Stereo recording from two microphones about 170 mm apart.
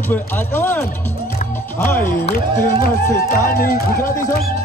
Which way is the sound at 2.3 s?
60° left (ahead or behind).